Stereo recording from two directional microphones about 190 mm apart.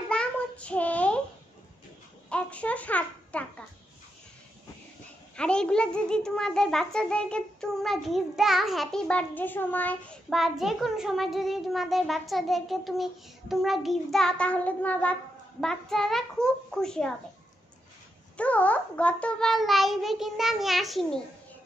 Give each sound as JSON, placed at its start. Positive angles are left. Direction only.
{"t": 0.1, "sound": "child singing", "side_deg": 5}
{"t": 2.2, "sound": "a sound", "side_deg": 5}
{"t": 5.3, "sound": "a child's voice", "side_deg": 5}
{"t": 18.4, "sound": "a child's voice", "side_deg": 5}